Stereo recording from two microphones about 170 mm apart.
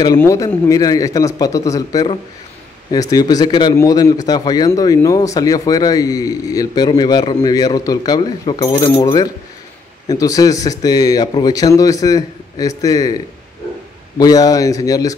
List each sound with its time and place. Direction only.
0.0 s a man's voice: 15° left (ahead or behind)
8.6 s a man's voice: 15° left (ahead or behind)